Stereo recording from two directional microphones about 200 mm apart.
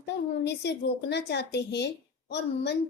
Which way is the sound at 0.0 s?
55° left (ahead or behind).